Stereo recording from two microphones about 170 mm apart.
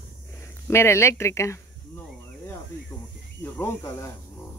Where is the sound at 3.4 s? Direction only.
15° left (ahead or behind).